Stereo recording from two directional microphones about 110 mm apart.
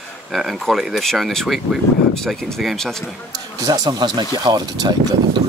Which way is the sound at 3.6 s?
35° right (ahead or behind).